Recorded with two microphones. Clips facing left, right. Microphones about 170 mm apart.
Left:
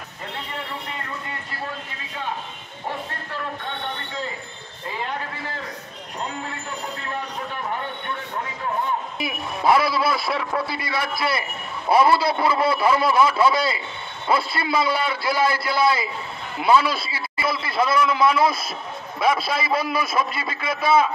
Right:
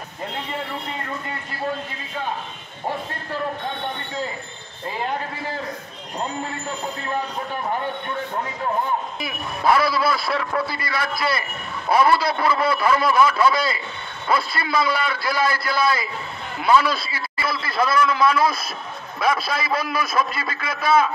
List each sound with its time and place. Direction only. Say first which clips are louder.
9.7 s a man's voice: even; 25° left (ahead or behind)